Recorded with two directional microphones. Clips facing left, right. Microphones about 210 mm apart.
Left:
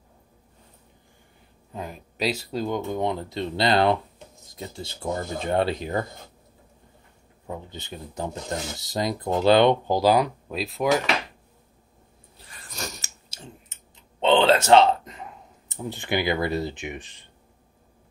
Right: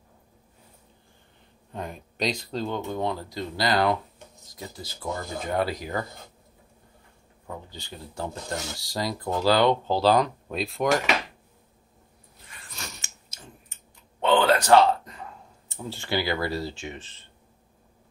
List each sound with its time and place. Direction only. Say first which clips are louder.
1.7 s speech: even; centre (ahead or behind); by 6.0 s 25° left (ahead or behind)
7.4 s speech: left 4 dB; 20° left (ahead or behind); by 11.0 s 5° left (ahead or behind)
12.4 s biting: left 6 dB; 40° left (ahead or behind)
13.4 s clicking: left 5 dB; 20° left (ahead or behind)